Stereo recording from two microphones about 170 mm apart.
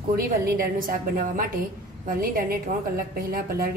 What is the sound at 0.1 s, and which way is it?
A woman's voice, 60° right (ahead or behind).